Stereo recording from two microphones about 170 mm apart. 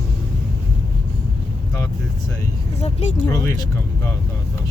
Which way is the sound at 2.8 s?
40° left (ahead or behind).